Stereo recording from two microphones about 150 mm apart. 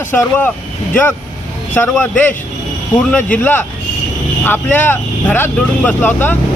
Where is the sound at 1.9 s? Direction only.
10° left (ahead or behind).